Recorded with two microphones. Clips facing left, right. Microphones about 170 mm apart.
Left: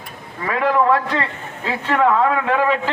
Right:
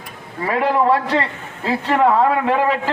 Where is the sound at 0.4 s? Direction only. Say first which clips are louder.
Even; 35° right (ahead or behind).